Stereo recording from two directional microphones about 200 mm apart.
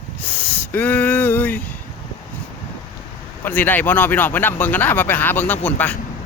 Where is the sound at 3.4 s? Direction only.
10° left (ahead or behind).